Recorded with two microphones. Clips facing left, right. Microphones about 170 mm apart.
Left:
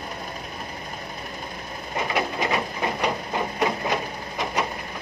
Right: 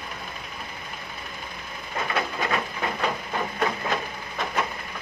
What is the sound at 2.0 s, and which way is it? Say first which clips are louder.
Printer: left 2 dB; 15° left (ahead or behind).